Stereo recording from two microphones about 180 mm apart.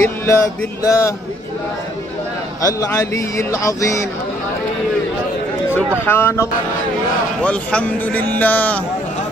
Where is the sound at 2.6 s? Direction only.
20° left (ahead or behind).